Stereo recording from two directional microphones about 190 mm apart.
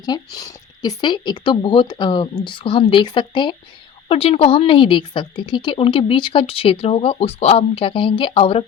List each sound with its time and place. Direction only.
0.0 s speech: 20° left (ahead or behind)